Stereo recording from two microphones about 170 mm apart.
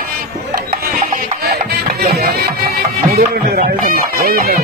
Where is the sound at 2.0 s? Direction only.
65° right (ahead or behind).